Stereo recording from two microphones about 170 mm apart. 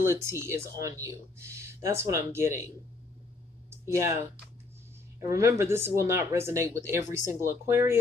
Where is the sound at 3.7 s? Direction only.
15° right (ahead or behind).